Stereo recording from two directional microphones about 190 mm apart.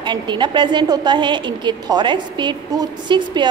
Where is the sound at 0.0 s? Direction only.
25° right (ahead or behind).